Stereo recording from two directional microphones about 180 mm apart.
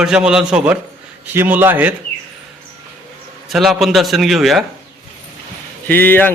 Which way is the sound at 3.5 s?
Centre (ahead or behind).